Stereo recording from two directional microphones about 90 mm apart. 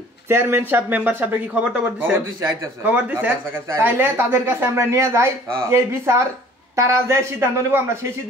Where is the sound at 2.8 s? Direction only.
20° right (ahead or behind).